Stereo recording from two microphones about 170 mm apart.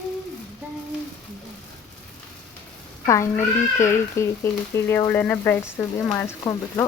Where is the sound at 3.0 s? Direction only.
15° left (ahead or behind).